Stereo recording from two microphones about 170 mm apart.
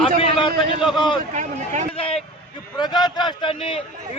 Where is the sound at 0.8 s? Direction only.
Centre (ahead or behind).